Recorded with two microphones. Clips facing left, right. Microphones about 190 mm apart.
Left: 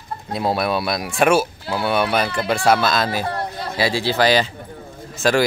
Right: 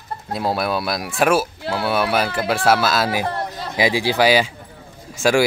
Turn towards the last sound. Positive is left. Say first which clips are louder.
# right 1 dB
turn(degrees=-10)  # may be behind; listen again after turning